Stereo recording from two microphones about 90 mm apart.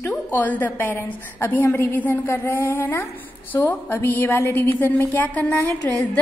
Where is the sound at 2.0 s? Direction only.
20° left (ahead or behind).